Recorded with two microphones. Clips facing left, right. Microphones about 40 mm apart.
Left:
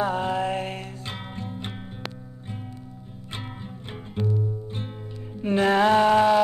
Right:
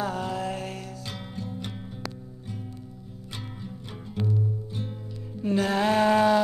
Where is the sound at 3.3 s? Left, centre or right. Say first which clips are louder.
Left 2 dB; left.